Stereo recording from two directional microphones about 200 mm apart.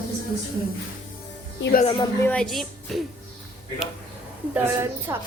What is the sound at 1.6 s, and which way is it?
Speech, 50° left (ahead or behind).